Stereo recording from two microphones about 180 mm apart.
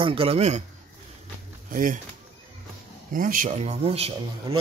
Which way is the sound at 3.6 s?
35° right (ahead or behind).